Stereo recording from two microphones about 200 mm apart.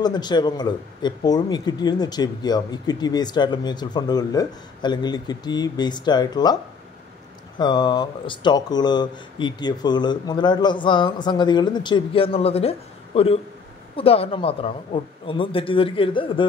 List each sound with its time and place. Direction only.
0.0 s speech: 20° left (ahead or behind)